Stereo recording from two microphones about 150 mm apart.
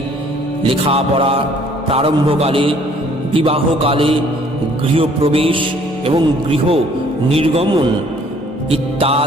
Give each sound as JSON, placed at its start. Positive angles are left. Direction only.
{"t": 0.7, "sound": "a man's voice", "side_deg": -40}
{"t": 8.7, "sound": "a man's voice", "side_deg": -40}